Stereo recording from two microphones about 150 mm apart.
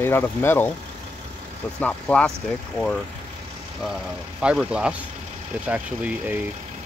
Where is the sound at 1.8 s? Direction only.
10° left (ahead or behind).